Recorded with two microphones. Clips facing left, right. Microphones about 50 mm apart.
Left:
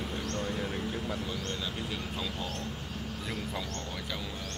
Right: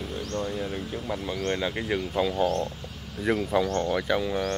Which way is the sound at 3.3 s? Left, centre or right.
Right.